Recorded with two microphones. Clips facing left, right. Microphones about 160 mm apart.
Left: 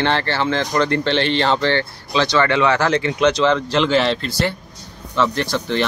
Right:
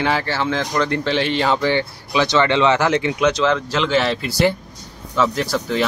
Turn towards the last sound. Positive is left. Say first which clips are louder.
# even
turn(degrees=-5)  # may be behind; listen again after turning